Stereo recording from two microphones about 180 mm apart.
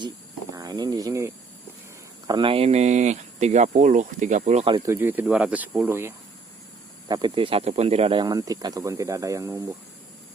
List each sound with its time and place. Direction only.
0.5 s speech: 20° right (ahead or behind); by 4.6 s 40° right (ahead or behind)
4.9 s speech: 10° right (ahead or behind)
7.1 s speech: 25° right (ahead or behind)